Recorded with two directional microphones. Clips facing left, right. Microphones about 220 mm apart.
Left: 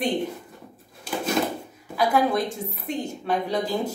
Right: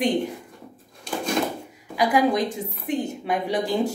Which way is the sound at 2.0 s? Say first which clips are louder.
Right 1 dB; 15° right (ahead or behind).